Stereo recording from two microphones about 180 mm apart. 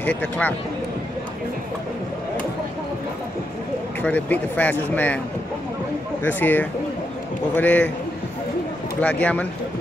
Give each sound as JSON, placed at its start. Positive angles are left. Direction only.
{"t": 0.0, "sound": "speech", "side_deg": 10}
{"t": 4.0, "sound": "speech", "side_deg": 10}
{"t": 6.2, "sound": "speech", "side_deg": 10}
{"t": 9.0, "sound": "speech", "side_deg": 10}